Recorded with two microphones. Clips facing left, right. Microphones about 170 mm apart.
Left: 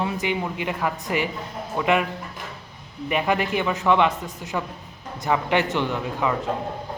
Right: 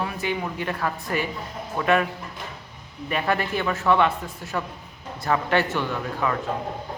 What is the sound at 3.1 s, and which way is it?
Speech, 15° left (ahead or behind).